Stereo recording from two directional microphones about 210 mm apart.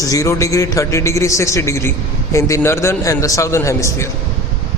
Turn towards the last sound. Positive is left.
turn(degrees=15)  # may be behind; listen again after turning